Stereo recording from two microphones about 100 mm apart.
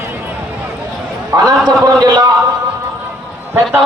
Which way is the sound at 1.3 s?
35° right (ahead or behind).